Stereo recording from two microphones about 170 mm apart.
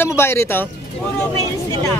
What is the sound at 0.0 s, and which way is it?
Speech, 15° left (ahead or behind).